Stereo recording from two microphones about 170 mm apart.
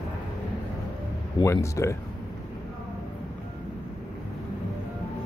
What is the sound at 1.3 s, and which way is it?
Speech, 15° left (ahead or behind).